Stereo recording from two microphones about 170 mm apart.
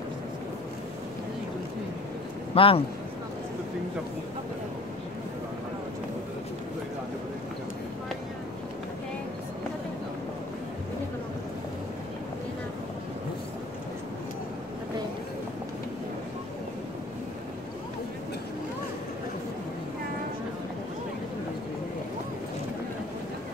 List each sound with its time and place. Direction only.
2.5 s speech: 30° left (ahead or behind)